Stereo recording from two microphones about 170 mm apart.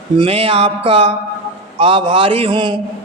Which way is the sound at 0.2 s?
35° right (ahead or behind).